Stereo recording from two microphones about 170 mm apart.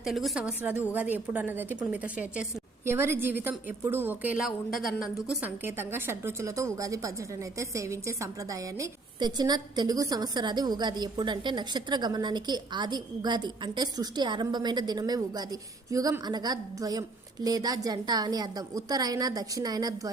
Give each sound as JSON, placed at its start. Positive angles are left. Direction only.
{"t": 0.0, "sound": "a woman's voice", "side_deg": 0}